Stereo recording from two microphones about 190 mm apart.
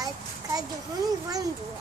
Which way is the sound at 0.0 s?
20° right (ahead or behind).